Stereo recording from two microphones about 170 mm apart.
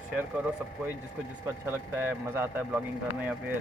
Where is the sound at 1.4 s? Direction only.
15° right (ahead or behind).